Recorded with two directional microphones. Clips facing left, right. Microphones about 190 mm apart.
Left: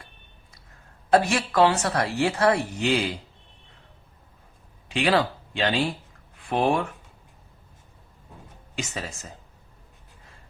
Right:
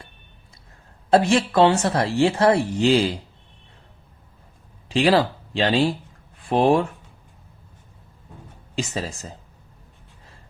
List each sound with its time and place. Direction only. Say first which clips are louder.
1.1 s speech: right 4 dB; 30° right (ahead or behind)
4.9 s speech: right 4 dB; 35° right (ahead or behind)
8.7 s speech: right 6 dB; 30° right (ahead or behind)